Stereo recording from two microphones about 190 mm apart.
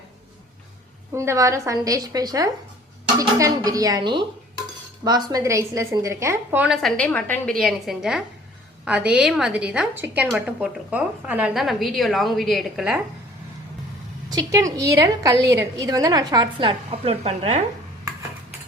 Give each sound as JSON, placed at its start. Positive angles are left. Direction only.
{"t": 1.1, "sound": "a woman's voice", "side_deg": -15}
{"t": 14.3, "sound": "a woman's voice", "side_deg": -20}